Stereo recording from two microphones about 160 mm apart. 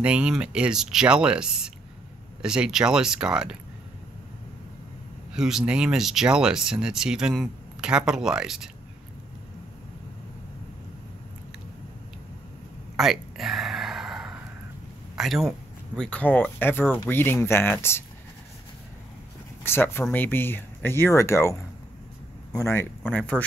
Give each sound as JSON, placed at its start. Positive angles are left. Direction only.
{"t": 0.0, "sound": "speech", "side_deg": -5}
{"t": 5.3, "sound": "speech", "side_deg": -5}
{"t": 12.9, "sound": "a sound", "side_deg": 0}
{"t": 15.1, "sound": "speech", "side_deg": 0}
{"t": 19.6, "sound": "speech", "side_deg": 15}